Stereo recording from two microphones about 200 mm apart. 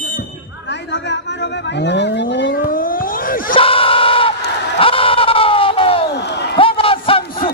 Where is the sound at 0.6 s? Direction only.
60° left (ahead or behind).